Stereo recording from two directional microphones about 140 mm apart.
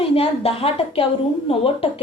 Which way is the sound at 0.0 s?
45° left (ahead or behind).